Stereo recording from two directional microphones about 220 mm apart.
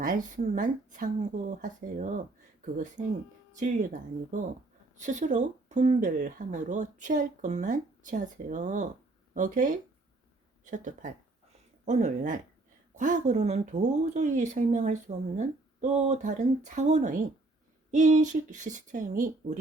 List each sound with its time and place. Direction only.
0.0 s speech: 35° right (ahead or behind)
4.9 s speech: 35° right (ahead or behind)